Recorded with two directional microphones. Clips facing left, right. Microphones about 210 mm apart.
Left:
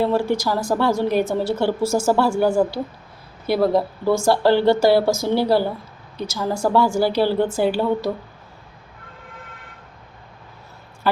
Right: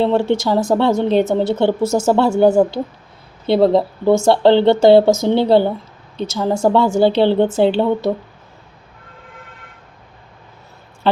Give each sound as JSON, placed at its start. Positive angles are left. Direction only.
{"t": 0.0, "sound": "a woman's voice", "side_deg": -25}
{"t": 11.1, "sound": "speech", "side_deg": -25}